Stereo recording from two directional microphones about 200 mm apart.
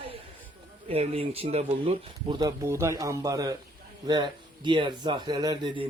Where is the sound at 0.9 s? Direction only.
30° right (ahead or behind).